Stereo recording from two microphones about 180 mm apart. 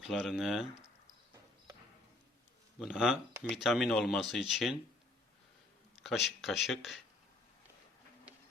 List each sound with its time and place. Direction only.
0.0 s speech: centre (ahead or behind)
2.7 s speech: centre (ahead or behind)
6.0 s speech: centre (ahead or behind)